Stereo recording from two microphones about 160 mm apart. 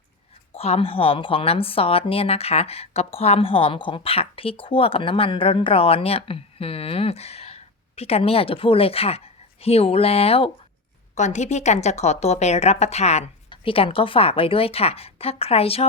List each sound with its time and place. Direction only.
0.5 s a woman's voice: 40° left (ahead or behind)